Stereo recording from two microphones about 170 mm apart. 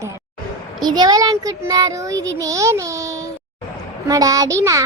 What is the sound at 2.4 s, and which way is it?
Child singing, 20° right (ahead or behind).